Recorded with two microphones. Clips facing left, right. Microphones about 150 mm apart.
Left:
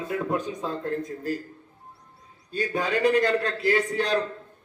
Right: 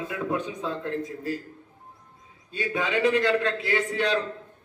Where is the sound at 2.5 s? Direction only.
35° left (ahead or behind).